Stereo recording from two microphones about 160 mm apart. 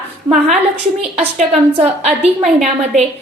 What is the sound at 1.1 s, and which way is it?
A woman's voice, 40° right (ahead or behind).